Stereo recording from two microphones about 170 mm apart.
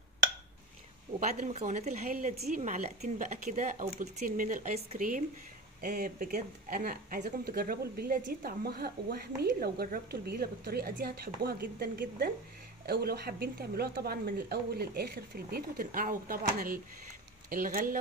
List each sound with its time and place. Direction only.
1.2 s a woman's voice: 45° right (ahead or behind)